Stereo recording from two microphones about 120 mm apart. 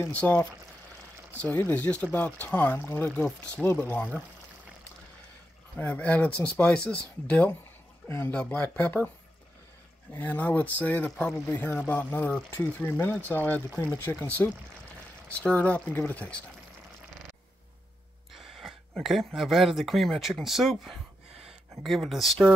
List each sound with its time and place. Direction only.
0.1 s speech: 10° left (ahead or behind)
3.1 s speech: 5° left (ahead or behind)
5.8 s speech: 10° left (ahead or behind)
10.1 s speech: 15° left (ahead or behind)
18.3 s speech: centre (ahead or behind)